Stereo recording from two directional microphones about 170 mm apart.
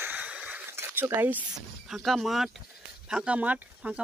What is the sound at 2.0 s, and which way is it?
A woman's voice, centre (ahead or behind).